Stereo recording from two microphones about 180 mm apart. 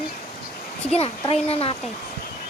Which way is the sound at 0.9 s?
35° left (ahead or behind).